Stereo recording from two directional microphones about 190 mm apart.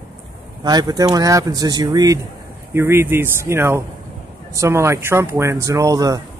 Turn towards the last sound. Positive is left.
turn(degrees=-20)  # may be behind; listen again after turning